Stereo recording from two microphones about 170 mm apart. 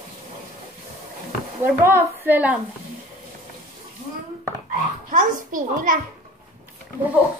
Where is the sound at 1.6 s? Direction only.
15° right (ahead or behind).